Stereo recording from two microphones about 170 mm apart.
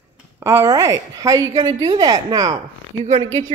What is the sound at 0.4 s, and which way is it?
Speech, 15° right (ahead or behind).